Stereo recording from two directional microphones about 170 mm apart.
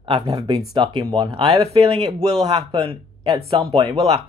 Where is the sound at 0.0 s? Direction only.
30° right (ahead or behind).